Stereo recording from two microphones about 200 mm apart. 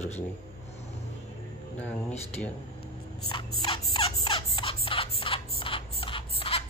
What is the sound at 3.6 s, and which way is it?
Turkey, 25° left (ahead or behind).